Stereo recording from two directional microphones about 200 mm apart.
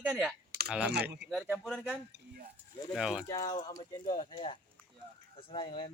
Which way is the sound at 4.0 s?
40° left (ahead or behind).